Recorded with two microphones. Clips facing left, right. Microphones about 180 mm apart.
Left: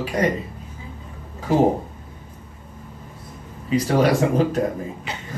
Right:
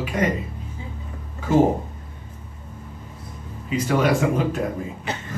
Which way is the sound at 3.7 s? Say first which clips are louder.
Left 3 dB; 35° left (ahead or behind).